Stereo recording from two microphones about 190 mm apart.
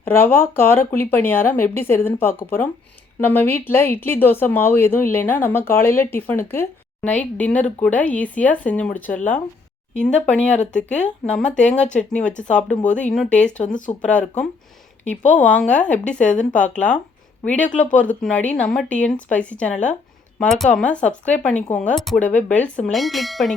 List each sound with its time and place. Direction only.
0.0 s speech: 10° left (ahead or behind)
13.7 s speech: 45° left (ahead or behind)
14.0 s speech: 5° left (ahead or behind)